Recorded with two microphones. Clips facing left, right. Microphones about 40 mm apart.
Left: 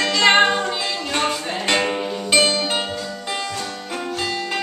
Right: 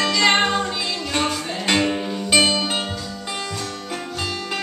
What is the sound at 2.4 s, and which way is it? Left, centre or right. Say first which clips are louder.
Music: even; centre.